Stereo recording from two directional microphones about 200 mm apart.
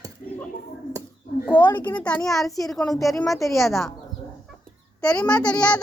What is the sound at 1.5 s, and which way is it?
Speech, 20° left (ahead or behind).